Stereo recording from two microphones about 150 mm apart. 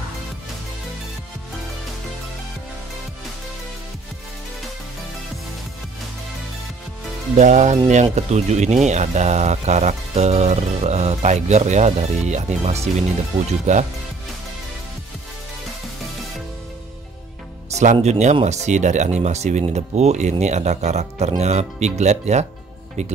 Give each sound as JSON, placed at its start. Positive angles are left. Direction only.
{"t": 7.3, "sound": "speech", "side_deg": -50}
{"t": 18.0, "sound": "speech", "side_deg": -45}